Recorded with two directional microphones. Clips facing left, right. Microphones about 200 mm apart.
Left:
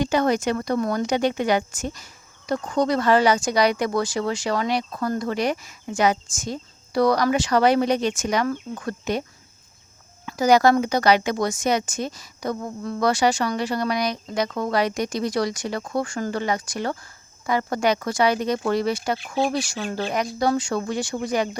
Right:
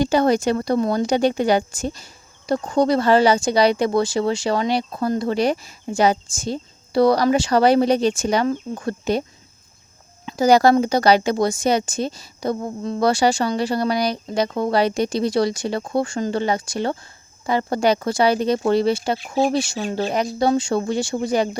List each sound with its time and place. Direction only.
0.0 s speech: 30° right (ahead or behind)
10.2 s speech: 30° right (ahead or behind)